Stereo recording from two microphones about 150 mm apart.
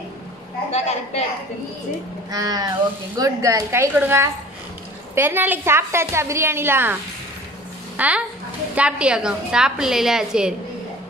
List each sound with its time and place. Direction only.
0.7 s a woman's voice: 50° left (ahead or behind)
2.3 s a woman's voice: 25° right (ahead or behind)
8.0 s a woman's voice: 10° right (ahead or behind)